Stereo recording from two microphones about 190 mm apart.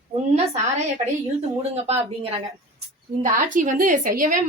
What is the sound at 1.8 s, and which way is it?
Speech, 30° right (ahead or behind).